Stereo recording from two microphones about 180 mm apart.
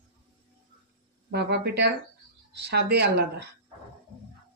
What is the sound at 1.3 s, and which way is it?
Speech, 65° right (ahead or behind).